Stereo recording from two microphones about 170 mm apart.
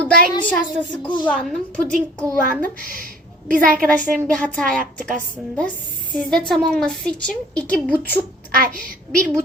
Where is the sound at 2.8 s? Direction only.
55° right (ahead or behind).